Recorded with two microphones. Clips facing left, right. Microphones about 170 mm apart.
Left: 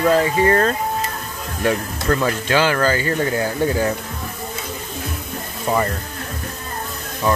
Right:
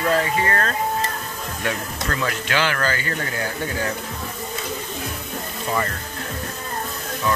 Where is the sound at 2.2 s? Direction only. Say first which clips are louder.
Left 3 dB; 30° left (ahead or behind).